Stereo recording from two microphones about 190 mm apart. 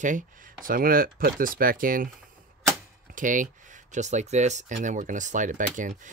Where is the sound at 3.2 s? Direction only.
45° right (ahead or behind).